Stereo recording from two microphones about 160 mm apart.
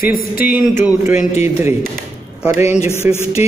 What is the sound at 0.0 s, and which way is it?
Speech, 65° left (ahead or behind).